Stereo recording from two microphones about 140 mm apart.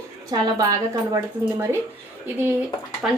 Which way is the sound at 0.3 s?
30° right (ahead or behind).